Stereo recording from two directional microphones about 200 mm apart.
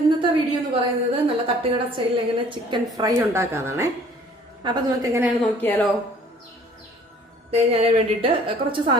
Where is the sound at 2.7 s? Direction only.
15° right (ahead or behind).